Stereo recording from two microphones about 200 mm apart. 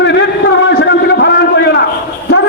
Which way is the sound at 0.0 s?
60° left (ahead or behind).